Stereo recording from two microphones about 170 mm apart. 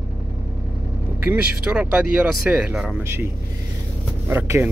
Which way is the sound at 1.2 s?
5° right (ahead or behind).